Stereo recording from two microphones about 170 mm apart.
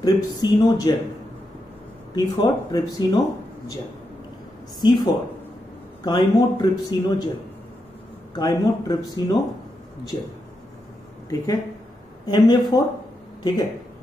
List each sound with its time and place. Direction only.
0.0 s speech: 25° left (ahead or behind)
2.1 s speech: 25° left (ahead or behind)
4.7 s speech: 25° left (ahead or behind)
8.4 s speech: 20° left (ahead or behind)
12.3 s speech: 25° left (ahead or behind)